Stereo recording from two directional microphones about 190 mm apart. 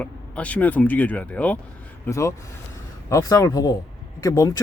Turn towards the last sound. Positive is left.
turn(degrees=15)  # may be behind; listen again after turning